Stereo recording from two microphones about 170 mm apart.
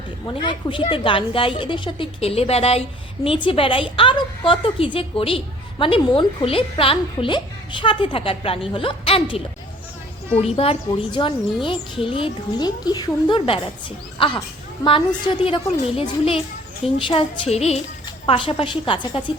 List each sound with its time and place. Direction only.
0.4 s a woman's voice: 30° left (ahead or behind)